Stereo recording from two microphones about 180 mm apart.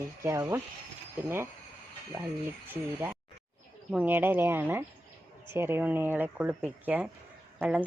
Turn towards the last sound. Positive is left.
turn(degrees=-5)  # may be behind; listen again after turning